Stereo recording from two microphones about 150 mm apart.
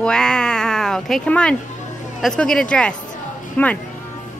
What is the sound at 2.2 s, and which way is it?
Speech, 5° left (ahead or behind).